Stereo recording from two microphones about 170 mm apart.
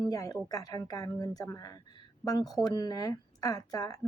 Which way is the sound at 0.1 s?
20° left (ahead or behind).